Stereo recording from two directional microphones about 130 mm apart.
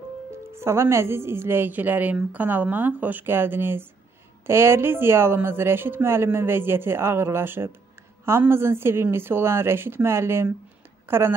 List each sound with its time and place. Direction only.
0.5 s a woman's voice: 20° right (ahead or behind)